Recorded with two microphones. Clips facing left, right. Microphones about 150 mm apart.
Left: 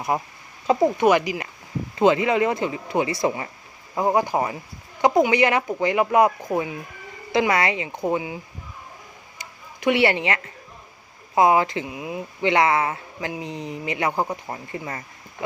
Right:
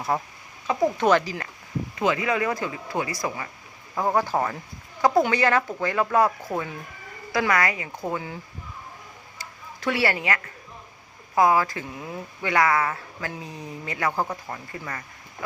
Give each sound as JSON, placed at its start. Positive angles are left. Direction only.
{"t": 0.1, "sound": "speech", "side_deg": 10}
{"t": 2.0, "sound": "speech", "side_deg": 25}
{"t": 9.4, "sound": "a sound", "side_deg": 20}
{"t": 11.3, "sound": "speech", "side_deg": 20}